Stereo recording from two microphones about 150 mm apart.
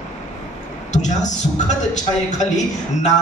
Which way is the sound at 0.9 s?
55° left (ahead or behind).